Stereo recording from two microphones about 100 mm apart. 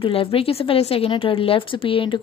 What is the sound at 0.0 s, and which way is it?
A woman's voice, 65° left (ahead or behind).